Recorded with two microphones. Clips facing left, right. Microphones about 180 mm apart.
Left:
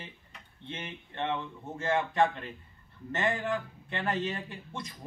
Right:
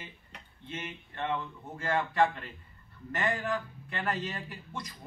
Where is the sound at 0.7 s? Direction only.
30° left (ahead or behind).